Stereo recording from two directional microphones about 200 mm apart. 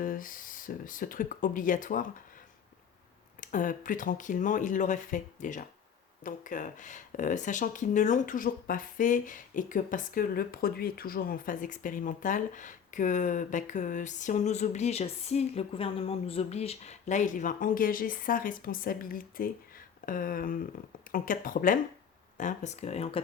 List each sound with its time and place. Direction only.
0.0 s speech: 45° left (ahead or behind)
3.4 s speech: 40° left (ahead or behind)